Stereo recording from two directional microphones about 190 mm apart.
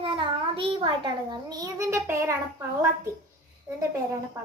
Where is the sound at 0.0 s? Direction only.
25° right (ahead or behind).